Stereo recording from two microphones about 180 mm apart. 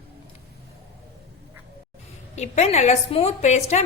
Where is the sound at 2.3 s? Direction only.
40° left (ahead or behind).